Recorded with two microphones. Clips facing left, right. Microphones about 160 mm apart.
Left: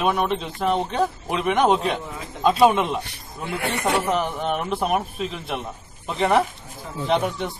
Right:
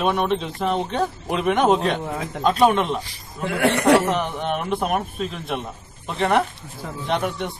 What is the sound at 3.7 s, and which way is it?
Speech, 80° right.